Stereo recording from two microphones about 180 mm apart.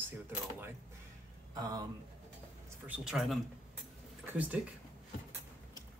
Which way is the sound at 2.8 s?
5° right (ahead or behind).